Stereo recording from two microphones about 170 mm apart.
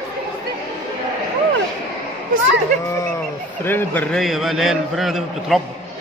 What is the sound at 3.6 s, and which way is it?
Speech, 10° left (ahead or behind).